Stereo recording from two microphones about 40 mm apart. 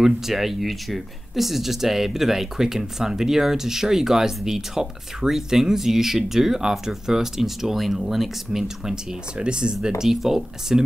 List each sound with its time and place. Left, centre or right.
0.0 s speech: centre
9.4 s speech: right
10.0 s speech: centre